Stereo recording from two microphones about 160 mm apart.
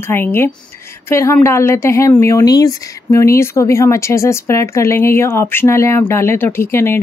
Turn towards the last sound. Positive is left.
turn(degrees=15)  # may be behind; listen again after turning